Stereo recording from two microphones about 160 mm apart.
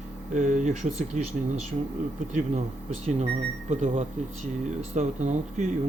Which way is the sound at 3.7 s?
50° right (ahead or behind).